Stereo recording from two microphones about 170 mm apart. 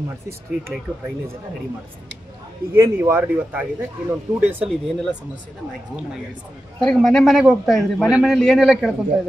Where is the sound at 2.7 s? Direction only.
15° right (ahead or behind).